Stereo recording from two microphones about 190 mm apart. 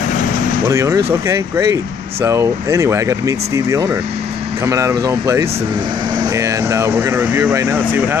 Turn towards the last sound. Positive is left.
turn(degrees=-15)  # may be behind; listen again after turning